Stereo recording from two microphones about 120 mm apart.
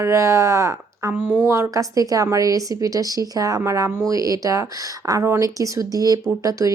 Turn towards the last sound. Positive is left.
turn(degrees=-30)  # may be behind; listen again after turning